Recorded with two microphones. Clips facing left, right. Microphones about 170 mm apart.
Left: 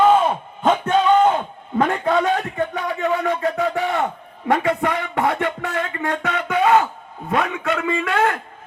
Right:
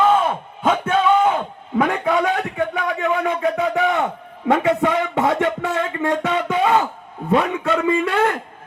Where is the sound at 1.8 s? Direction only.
10° right (ahead or behind); by 8.1 s 30° right (ahead or behind).